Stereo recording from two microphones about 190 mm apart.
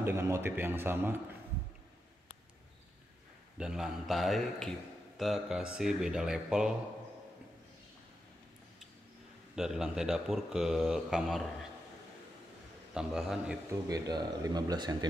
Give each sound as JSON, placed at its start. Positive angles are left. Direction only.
{"t": 0.0, "sound": "a man's voice", "side_deg": -15}
{"t": 3.5, "sound": "speech", "side_deg": -5}
{"t": 9.6, "sound": "speech", "side_deg": -5}
{"t": 12.9, "sound": "speech", "side_deg": 0}
{"t": 13.7, "sound": "speech", "side_deg": -20}